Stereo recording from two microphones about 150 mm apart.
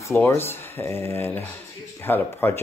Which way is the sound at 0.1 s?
15° left (ahead or behind).